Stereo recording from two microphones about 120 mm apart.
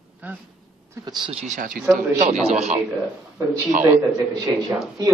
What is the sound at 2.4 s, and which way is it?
Speech, 65° right (ahead or behind).